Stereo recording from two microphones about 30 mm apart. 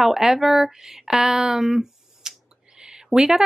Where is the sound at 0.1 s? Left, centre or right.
Centre.